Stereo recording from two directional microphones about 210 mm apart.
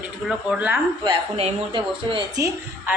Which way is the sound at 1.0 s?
25° right (ahead or behind).